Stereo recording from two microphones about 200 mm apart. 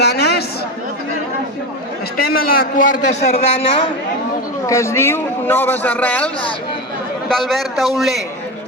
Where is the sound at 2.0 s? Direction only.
50° left (ahead or behind).